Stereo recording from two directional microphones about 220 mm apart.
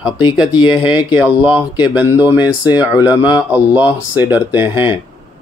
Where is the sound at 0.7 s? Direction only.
5° right (ahead or behind).